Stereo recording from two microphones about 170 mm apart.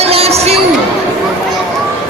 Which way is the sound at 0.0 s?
35° right (ahead or behind).